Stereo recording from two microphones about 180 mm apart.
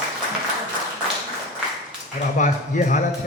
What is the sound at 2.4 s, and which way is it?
Speech, 45° left (ahead or behind).